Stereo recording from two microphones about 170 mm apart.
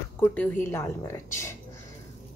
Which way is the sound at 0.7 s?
15° left (ahead or behind).